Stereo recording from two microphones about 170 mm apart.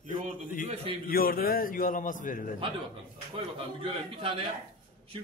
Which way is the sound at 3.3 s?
30° right (ahead or behind).